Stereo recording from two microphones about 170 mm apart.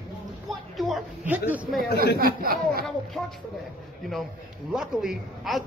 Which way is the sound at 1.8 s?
65° left (ahead or behind).